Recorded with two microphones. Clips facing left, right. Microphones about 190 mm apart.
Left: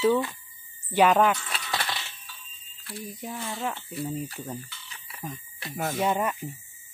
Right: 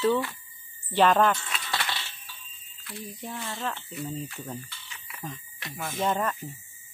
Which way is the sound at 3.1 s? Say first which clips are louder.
Left 2 dB; 10° left (ahead or behind).